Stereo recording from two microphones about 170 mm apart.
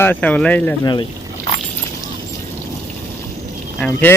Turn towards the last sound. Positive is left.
turn(degrees=10)  # may be behind; listen again after turning